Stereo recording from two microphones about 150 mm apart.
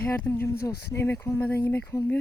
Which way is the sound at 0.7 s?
90° left.